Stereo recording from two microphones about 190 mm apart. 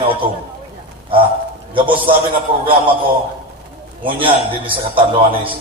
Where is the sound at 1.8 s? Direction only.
25° right (ahead or behind).